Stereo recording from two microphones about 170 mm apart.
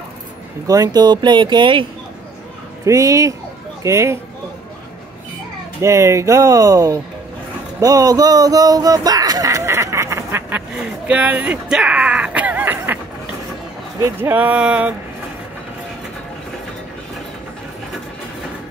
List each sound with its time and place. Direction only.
0.7 s speech: 20° right (ahead or behind)
2.8 s speech: 20° right (ahead or behind)
5.8 s speech: 15° right (ahead or behind)
11.1 s a sound: 10° right (ahead or behind)
14.0 s speech: 10° right (ahead or behind)